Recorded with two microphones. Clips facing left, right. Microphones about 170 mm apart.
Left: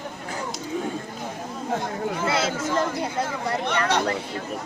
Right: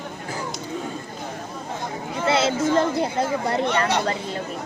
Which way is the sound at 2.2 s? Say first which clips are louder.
Right 7 dB; 25° right (ahead or behind).